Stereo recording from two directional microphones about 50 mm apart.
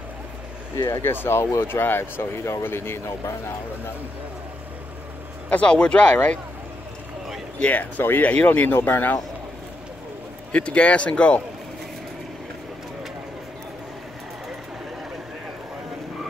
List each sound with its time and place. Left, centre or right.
1.0 s speech: left
1.4 s speech: left
1.7 s speech: left
5.5 s speech: centre
7.7 s speech: left
10.5 s speech: left